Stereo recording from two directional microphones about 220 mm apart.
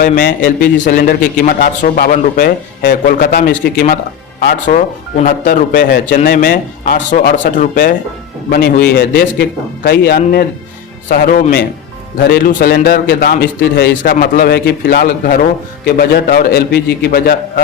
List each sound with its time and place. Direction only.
0.0 s speech: 40° left (ahead or behind)
5.1 s a man's voice: 35° left (ahead or behind)